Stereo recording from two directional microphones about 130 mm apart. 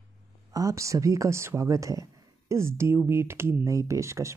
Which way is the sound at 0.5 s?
25° right (ahead or behind).